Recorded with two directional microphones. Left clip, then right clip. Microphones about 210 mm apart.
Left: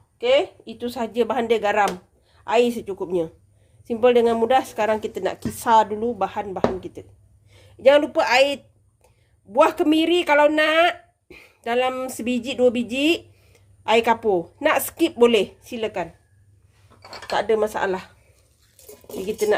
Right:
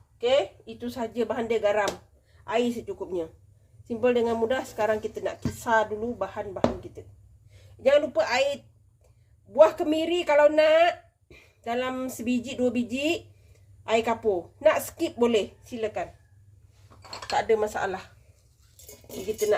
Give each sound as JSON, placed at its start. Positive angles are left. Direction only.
{"t": 0.2, "sound": "a woman's voice", "side_deg": 55}
{"t": 7.5, "sound": "a sound", "side_deg": 50}
{"t": 9.5, "sound": "speech", "side_deg": 50}
{"t": 17.2, "sound": "speech", "side_deg": 45}